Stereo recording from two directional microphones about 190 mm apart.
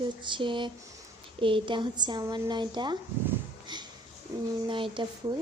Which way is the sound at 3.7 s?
25° right (ahead or behind).